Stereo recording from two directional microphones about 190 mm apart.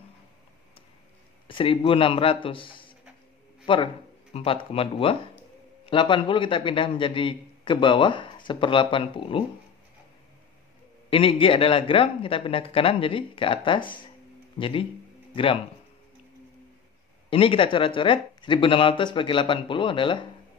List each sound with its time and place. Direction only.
1.5 s a man's voice: 25° left (ahead or behind)
11.1 s a man's voice: 30° left (ahead or behind)
17.3 s a man's voice: 30° left (ahead or behind)